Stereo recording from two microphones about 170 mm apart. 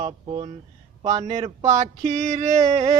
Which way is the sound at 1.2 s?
40° right (ahead or behind).